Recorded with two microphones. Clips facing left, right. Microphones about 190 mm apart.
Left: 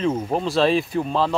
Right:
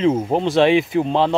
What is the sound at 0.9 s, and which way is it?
Speech, 25° right (ahead or behind).